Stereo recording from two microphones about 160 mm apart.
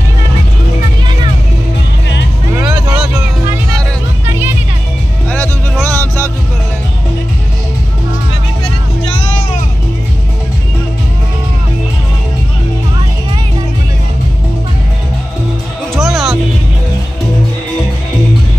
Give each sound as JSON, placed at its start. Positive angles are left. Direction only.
{"t": 5.3, "sound": "music", "side_deg": 10}
{"t": 15.9, "sound": "music", "side_deg": 0}